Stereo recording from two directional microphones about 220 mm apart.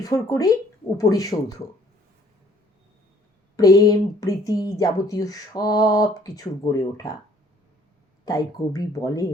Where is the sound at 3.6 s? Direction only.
15° left (ahead or behind).